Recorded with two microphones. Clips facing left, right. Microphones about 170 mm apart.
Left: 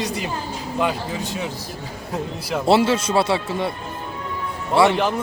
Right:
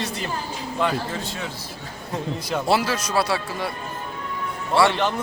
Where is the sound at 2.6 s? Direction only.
25° left (ahead or behind).